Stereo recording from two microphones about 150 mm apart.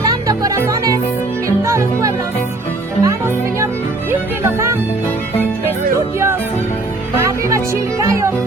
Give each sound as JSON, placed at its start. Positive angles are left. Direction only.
{"t": 0.0, "sound": "music", "side_deg": -25}
{"t": 7.2, "sound": "music", "side_deg": -20}